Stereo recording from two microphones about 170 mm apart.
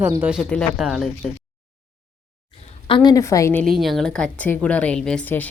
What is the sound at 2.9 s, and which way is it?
Speech, 25° left (ahead or behind).